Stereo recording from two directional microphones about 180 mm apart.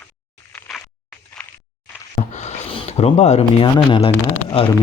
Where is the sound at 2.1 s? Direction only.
40° left (ahead or behind).